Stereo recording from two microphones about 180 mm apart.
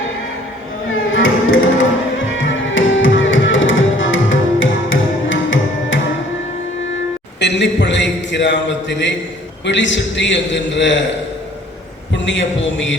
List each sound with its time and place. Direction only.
0.9 s music: 90° left
7.3 s a sound: 75° left (ahead or behind)
9.6 s a man's voice: 90° left
12.1 s speech: 90° left